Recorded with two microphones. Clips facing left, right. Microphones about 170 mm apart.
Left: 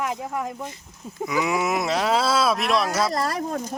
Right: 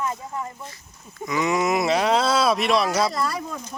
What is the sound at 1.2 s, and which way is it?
Speech, 5° left (ahead or behind).